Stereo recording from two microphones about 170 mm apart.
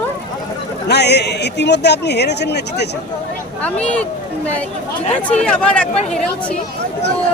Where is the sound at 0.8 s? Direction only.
80° left.